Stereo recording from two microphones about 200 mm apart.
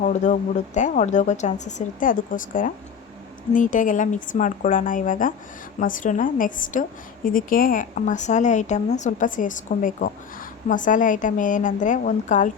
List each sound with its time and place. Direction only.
0.0 s a woman's voice: 35° left (ahead or behind)